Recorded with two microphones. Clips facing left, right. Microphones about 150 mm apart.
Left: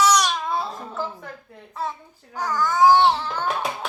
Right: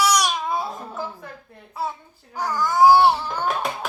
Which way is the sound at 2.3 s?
10° right (ahead or behind).